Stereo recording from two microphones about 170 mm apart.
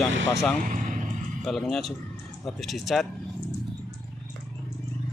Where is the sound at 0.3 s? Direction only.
Centre (ahead or behind).